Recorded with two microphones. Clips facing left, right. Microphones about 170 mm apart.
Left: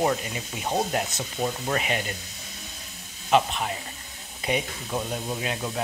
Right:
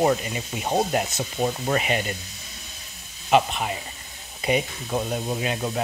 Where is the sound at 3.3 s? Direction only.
5° right (ahead or behind).